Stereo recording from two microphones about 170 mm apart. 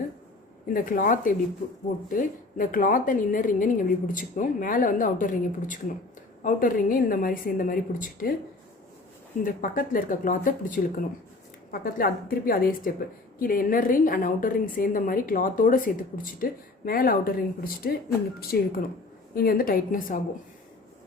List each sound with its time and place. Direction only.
0.7 s a woman's voice: 55° left (ahead or behind)
9.4 s a woman's voice: 55° left (ahead or behind)